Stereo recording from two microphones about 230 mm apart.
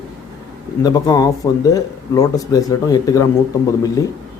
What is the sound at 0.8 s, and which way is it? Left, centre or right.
Speech, centre.